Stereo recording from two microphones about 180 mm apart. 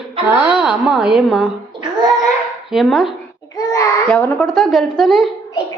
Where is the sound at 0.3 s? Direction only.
5° right (ahead or behind).